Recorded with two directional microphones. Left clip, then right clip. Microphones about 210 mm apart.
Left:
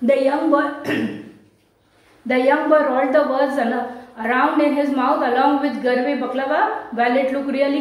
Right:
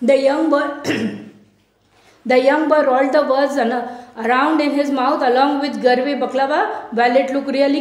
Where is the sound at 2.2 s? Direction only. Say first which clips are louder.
Right 3 dB; 50° right (ahead or behind).